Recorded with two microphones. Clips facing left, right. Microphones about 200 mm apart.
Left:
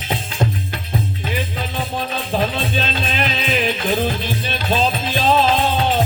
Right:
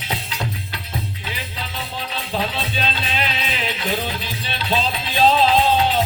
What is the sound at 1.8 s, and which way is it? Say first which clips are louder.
Music: left 6 dB; 50° left (ahead or behind).